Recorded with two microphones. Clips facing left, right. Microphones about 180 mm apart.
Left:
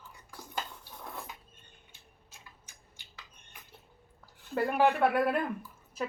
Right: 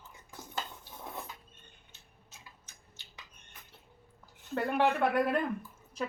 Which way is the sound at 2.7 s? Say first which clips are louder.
Even; 10° left (ahead or behind).